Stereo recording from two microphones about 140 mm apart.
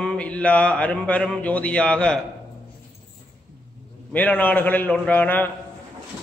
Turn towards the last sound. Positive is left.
turn(degrees=15)  # may be behind; listen again after turning